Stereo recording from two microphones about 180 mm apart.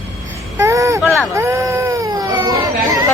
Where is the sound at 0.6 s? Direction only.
15° right (ahead or behind).